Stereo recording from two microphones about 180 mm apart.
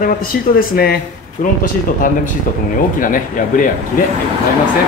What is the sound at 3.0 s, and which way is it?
Speech, 50° left (ahead or behind).